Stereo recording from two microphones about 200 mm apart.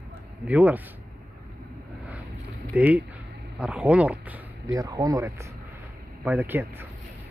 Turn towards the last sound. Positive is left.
turn(degrees=-10)  # may be behind; listen again after turning